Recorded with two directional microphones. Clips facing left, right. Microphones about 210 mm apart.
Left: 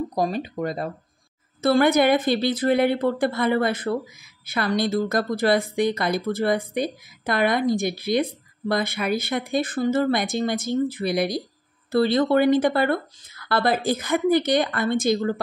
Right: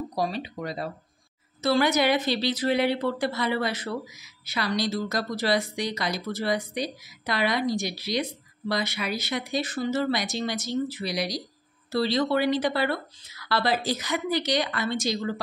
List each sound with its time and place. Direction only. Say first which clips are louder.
0.1 s a woman's voice: left 4 dB; 50° left (ahead or behind)